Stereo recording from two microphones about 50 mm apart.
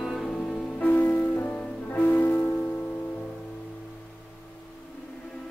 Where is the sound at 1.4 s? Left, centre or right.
Centre.